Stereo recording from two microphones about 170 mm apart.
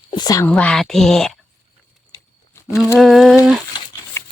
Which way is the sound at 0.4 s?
5° left (ahead or behind).